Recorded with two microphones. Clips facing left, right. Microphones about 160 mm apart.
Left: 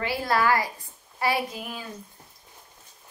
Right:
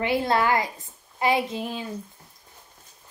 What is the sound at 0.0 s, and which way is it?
A woman's voice, 20° right (ahead or behind).